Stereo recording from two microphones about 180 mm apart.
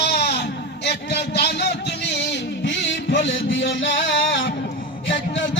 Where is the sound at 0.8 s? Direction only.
65° left (ahead or behind).